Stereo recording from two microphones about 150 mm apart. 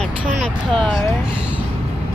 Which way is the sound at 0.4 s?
5° left (ahead or behind).